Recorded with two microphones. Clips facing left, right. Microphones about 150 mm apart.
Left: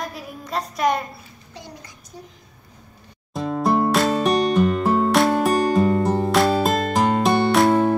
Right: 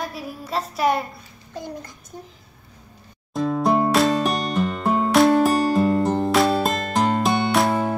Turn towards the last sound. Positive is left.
turn(degrees=0)  # may be behind; listen again after turning